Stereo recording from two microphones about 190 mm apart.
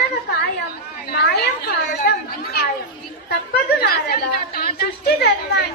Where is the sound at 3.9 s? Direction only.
55° left (ahead or behind).